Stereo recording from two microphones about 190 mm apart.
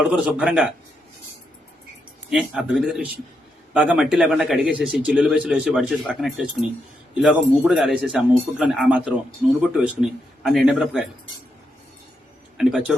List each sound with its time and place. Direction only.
0.0 s a man's voice: 5° right (ahead or behind)
2.3 s a man's voice: 5° right (ahead or behind)
7.7 s a man's voice: centre (ahead or behind)
12.6 s speech: 5° right (ahead or behind)